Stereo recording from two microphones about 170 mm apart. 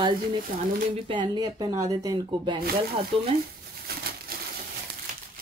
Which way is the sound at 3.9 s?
65° right (ahead or behind).